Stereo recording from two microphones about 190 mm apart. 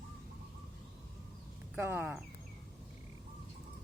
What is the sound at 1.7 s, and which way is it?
Speech, 10° right (ahead or behind).